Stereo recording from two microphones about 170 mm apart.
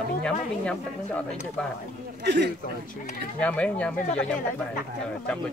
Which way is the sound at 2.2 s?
80° right.